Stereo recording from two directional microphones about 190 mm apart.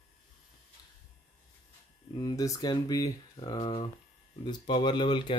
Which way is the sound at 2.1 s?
20° left (ahead or behind).